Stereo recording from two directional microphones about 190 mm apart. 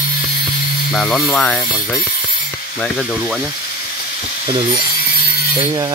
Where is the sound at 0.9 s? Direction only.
5° left (ahead or behind).